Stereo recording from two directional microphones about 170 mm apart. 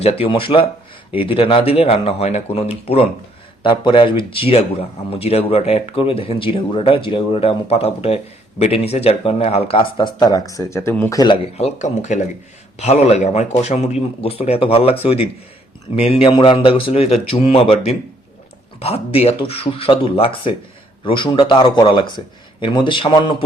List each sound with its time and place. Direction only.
0.0 s speech: 35° left (ahead or behind); by 11.2 s 15° left (ahead or behind)
11.5 s speech: 40° left (ahead or behind)